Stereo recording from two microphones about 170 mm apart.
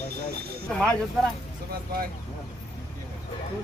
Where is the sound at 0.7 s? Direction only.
5° left (ahead or behind).